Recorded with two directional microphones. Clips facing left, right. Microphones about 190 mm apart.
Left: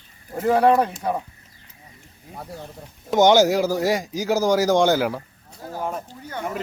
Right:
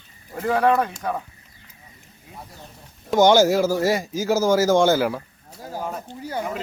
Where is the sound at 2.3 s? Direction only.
30° left (ahead or behind).